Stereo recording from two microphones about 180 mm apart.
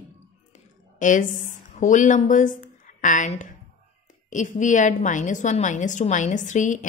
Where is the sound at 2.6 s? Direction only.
45° left (ahead or behind).